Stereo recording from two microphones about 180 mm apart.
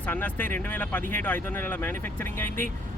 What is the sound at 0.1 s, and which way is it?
A man's voice, 10° left (ahead or behind).